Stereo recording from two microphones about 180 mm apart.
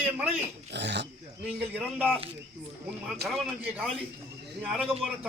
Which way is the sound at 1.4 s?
5° right (ahead or behind).